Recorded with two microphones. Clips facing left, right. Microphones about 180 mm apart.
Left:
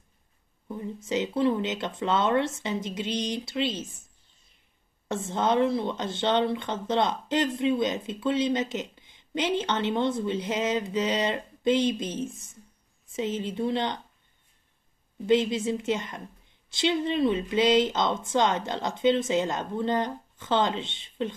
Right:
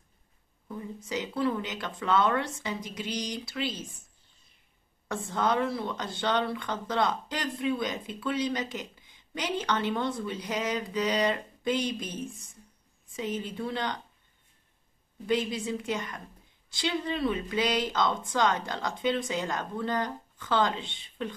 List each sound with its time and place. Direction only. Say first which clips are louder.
0.7 s speech: left 5 dB; 25° left (ahead or behind)
5.0 s speech: left 2 dB; 25° left (ahead or behind)
15.2 s speech: left 6 dB; 25° left (ahead or behind)